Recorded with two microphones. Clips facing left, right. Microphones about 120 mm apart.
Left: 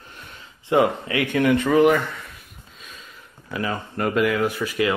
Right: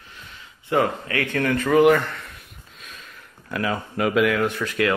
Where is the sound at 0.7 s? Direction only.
20° left (ahead or behind).